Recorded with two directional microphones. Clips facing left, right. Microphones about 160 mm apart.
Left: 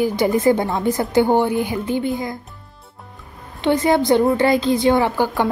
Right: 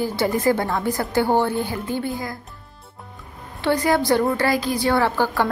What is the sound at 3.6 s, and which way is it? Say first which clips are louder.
A woman's voice: left 3 dB; 20° left (ahead or behind).